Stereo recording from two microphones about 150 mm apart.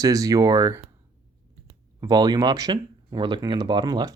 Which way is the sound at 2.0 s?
25° right (ahead or behind).